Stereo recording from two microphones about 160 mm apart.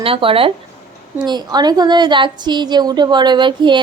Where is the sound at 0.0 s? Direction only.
35° right (ahead or behind).